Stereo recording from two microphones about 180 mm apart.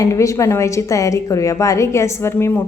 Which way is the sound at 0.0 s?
15° left (ahead or behind).